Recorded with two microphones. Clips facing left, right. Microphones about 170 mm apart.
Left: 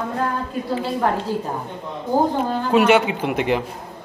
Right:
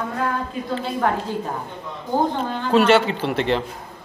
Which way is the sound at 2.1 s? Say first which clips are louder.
Left 2 dB; 10° left (ahead or behind).